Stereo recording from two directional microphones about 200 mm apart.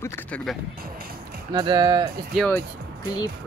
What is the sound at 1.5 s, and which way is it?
Speech, 25° right (ahead or behind).